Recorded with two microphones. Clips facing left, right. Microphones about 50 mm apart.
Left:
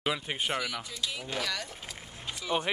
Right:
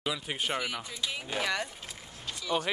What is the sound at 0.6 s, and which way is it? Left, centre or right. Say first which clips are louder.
Speech: even; centre.